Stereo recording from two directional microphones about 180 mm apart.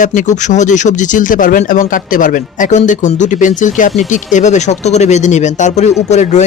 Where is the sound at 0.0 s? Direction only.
45° left (ahead or behind).